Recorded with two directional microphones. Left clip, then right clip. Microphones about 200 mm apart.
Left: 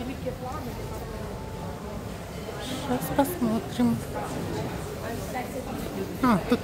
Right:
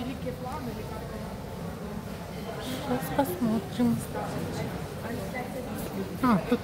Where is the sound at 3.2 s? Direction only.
20° left (ahead or behind).